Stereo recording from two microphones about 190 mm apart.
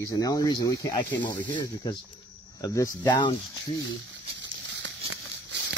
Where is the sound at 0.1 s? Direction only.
20° left (ahead or behind).